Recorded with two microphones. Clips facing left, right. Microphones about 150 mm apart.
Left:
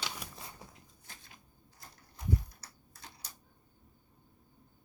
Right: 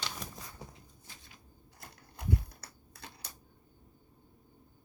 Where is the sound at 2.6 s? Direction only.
60° right (ahead or behind).